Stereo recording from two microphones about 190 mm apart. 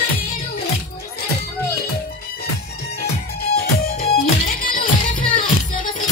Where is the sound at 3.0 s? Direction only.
55° left (ahead or behind).